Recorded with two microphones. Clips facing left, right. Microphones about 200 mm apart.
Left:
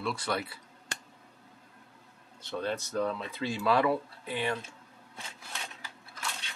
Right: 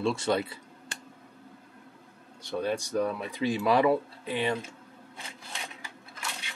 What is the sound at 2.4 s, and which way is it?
Speech, 15° right (ahead or behind).